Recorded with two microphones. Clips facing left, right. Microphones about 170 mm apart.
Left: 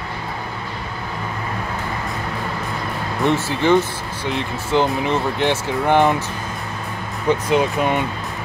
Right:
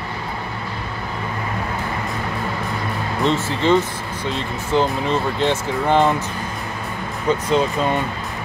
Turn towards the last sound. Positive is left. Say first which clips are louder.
# left 1 dB
turn(degrees=15)  # may be behind; listen again after turning